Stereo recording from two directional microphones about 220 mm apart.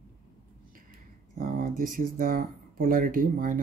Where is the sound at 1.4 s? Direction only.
40° right (ahead or behind).